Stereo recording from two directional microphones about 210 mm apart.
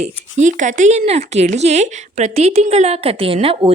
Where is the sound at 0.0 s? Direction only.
35° right (ahead or behind).